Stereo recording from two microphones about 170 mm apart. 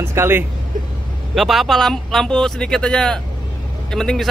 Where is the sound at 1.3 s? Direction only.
Centre (ahead or behind).